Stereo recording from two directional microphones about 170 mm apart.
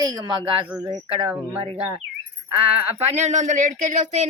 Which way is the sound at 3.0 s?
40° right (ahead or behind).